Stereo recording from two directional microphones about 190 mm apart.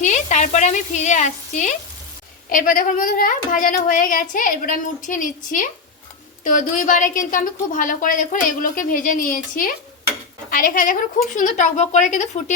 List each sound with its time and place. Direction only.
0.0 s a woman's voice: 40° left (ahead or behind)